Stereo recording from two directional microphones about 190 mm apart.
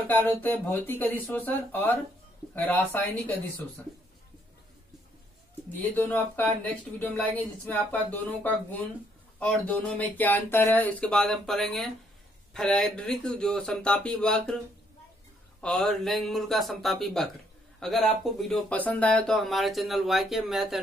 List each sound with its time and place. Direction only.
0.0 s speech: 10° left (ahead or behind)
5.7 s speech: 10° left (ahead or behind)
15.6 s speech: centre (ahead or behind)